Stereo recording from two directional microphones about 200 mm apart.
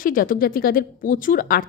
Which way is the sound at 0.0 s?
45° left (ahead or behind).